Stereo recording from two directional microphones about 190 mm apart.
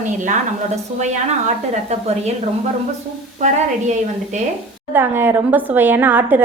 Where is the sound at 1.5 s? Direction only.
35° right (ahead or behind).